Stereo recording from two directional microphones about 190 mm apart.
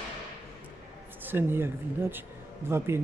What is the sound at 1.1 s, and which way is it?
Speech, 10° right (ahead or behind).